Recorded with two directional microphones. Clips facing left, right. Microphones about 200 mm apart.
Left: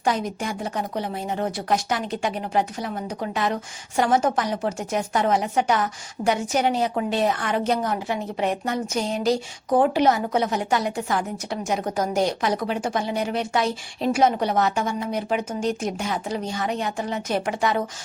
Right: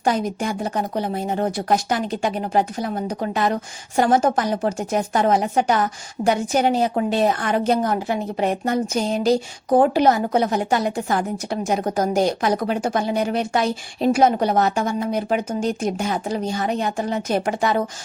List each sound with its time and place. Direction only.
0.0 s speech: 40° right (ahead or behind)